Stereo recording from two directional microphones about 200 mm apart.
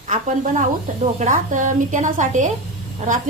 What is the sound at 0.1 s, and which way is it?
A woman's voice, 40° right (ahead or behind).